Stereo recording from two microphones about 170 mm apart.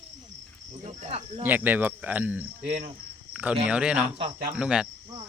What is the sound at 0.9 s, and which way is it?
Speech, 35° right (ahead or behind).